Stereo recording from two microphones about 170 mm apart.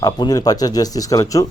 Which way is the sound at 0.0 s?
20° left (ahead or behind).